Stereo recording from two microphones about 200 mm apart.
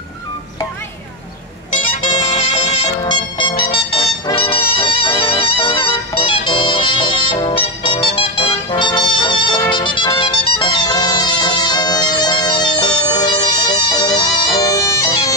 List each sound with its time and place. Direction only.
1.9 s music: 40° left (ahead or behind)
3.1 s music: 25° left (ahead or behind)